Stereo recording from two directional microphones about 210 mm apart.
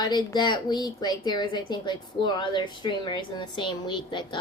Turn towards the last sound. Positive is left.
turn(degrees=20)  # may be behind; listen again after turning